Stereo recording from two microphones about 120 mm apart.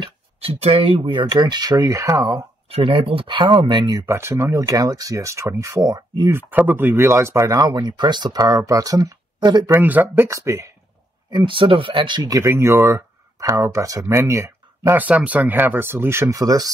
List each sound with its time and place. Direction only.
0.0 s speech: 55° right (ahead or behind); by 2.4 s 30° right (ahead or behind)
2.7 s speech: 50° right (ahead or behind)
4.0 s speech: 20° right (ahead or behind)
6.3 s speech: 15° right (ahead or behind); by 9.7 s 35° right (ahead or behind)
9.7 s speech: 15° right (ahead or behind)
11.2 s speech: 45° right (ahead or behind)